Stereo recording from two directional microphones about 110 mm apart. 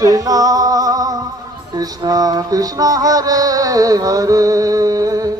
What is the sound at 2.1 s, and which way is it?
Music, 35° right (ahead or behind).